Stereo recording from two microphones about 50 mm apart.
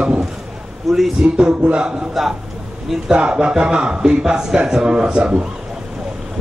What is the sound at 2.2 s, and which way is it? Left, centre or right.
Speech, centre.